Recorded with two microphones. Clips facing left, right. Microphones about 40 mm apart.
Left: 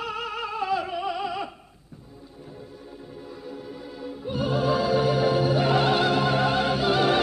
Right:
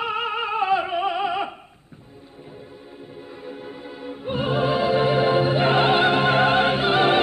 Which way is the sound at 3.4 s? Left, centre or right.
Right.